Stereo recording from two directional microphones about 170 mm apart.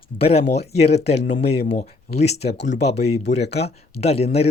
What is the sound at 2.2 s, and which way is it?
Speech, 40° left (ahead or behind).